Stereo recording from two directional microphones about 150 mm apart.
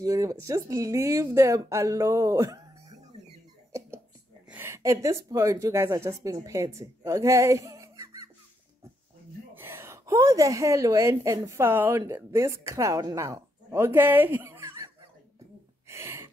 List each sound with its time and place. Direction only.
0.0 s speech: 25° right (ahead or behind)
4.5 s speech: 15° right (ahead or behind)
9.6 s a woman's voice: 15° right (ahead or behind)
15.9 s a sound: 15° right (ahead or behind)